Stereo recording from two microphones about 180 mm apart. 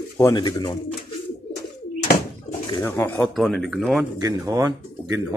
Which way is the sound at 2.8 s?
10° left (ahead or behind).